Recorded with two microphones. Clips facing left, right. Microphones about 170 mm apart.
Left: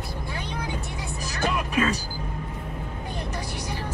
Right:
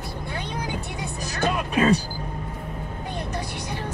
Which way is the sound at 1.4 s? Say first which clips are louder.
Right 3 dB; 30° right (ahead or behind).